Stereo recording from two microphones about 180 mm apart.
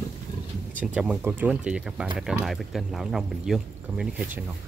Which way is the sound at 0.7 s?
5° right (ahead or behind).